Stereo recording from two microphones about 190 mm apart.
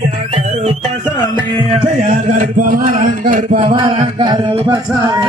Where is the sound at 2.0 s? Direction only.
40° right (ahead or behind).